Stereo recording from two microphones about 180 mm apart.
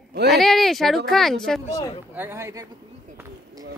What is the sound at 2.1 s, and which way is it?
Speech, 10° right (ahead or behind).